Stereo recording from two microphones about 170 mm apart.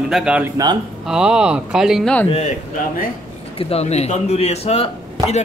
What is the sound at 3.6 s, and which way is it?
A man's voice, 40° left (ahead or behind).